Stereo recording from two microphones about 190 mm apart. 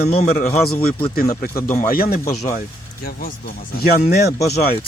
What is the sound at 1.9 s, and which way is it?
Speech, 50° left (ahead or behind).